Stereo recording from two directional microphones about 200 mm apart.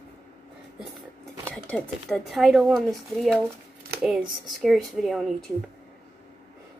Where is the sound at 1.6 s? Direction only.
5° left (ahead or behind).